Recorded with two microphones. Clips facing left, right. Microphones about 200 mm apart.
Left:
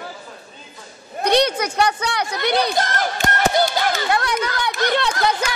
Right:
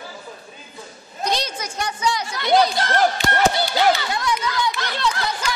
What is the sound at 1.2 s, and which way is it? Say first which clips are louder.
Chatter: left 8 dB; 65° left (ahead or behind).